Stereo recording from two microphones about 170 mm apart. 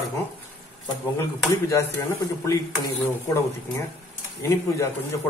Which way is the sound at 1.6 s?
20° left (ahead or behind).